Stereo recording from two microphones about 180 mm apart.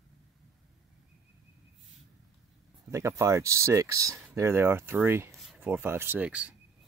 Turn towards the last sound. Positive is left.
turn(degrees=-5)  # may be behind; listen again after turning